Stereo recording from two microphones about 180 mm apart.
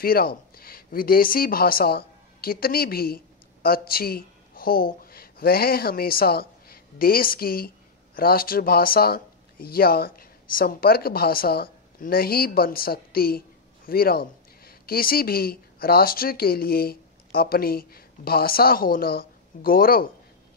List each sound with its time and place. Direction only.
0.0 s speech: 55° left (ahead or behind)